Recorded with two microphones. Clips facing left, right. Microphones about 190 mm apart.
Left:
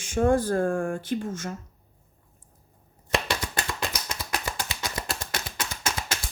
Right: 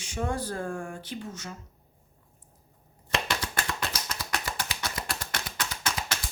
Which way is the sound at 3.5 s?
15° left (ahead or behind).